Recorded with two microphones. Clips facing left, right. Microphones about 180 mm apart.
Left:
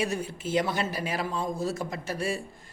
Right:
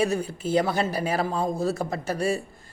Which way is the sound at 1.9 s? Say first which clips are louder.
Right 5 dB; 40° right (ahead or behind).